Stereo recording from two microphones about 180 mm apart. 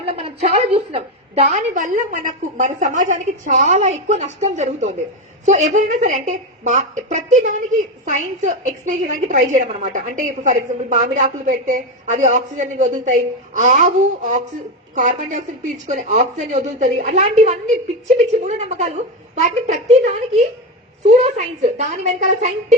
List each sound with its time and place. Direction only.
0.2 s a woman's voice: 35° right (ahead or behind)